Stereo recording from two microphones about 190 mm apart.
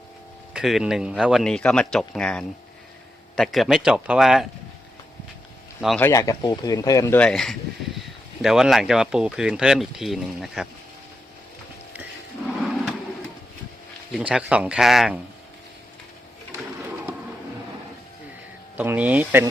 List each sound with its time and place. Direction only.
0.5 s speech: centre (ahead or behind)
6.0 s speech: 15° left (ahead or behind); by 10.7 s centre (ahead or behind)
14.1 s speech: 5° right (ahead or behind)
18.8 s speech: 10° right (ahead or behind)